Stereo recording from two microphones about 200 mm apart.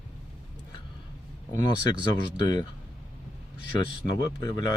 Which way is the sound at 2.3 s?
20° left (ahead or behind).